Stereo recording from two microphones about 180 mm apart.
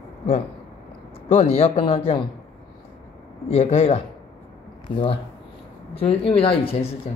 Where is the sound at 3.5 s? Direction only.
35° left (ahead or behind).